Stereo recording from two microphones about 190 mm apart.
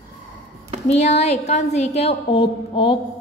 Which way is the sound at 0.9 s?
35° left (ahead or behind).